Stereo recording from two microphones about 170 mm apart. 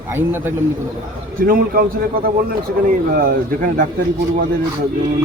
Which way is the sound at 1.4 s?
60° right (ahead or behind).